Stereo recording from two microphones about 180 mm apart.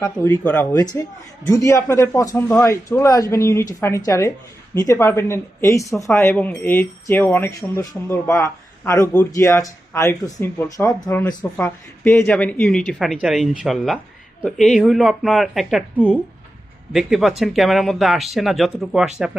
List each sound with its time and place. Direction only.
0.0 s speech: 15° left (ahead or behind)